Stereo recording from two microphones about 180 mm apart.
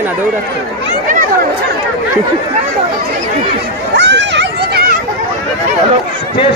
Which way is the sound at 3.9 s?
80° right.